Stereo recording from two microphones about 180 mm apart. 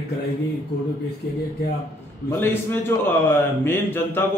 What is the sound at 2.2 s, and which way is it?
A man's voice, 10° left (ahead or behind).